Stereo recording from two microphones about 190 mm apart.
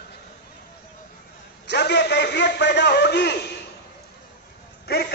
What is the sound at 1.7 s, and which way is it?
A man's voice, 65° left (ahead or behind).